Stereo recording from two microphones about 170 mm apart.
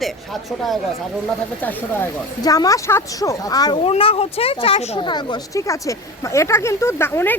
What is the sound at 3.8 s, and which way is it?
Speech, 35° left (ahead or behind).